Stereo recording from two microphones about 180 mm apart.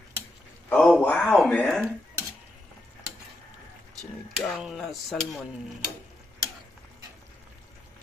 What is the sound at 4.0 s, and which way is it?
Speech, centre (ahead or behind).